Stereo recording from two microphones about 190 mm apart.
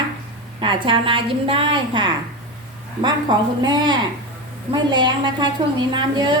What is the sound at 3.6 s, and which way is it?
A woman's voice, 25° right (ahead or behind).